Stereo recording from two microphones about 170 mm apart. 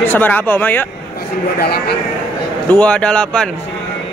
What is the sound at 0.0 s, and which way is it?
Speech, 10° left (ahead or behind).